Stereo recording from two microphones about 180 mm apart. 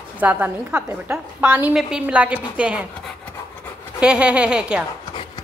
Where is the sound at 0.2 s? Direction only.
10° right (ahead or behind).